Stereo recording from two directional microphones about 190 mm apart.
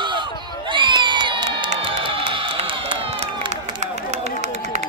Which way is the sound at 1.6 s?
25° right (ahead or behind).